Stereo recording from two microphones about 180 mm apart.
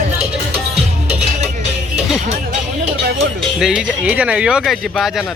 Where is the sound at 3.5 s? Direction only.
5° right (ahead or behind).